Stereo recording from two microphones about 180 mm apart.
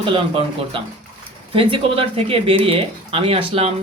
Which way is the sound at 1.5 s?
30° right (ahead or behind).